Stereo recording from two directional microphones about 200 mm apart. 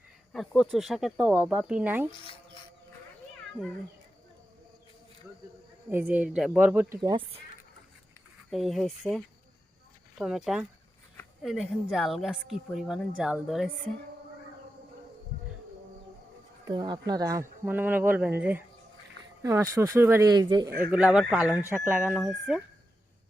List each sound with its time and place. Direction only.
0.3 s speech: centre (ahead or behind)
5.9 s speech: 10° right (ahead or behind)
8.4 s speech: centre (ahead or behind)
16.6 s speech: 20° right (ahead or behind)
20.7 s speech: 45° right (ahead or behind)
20.9 s speech: 5° right (ahead or behind)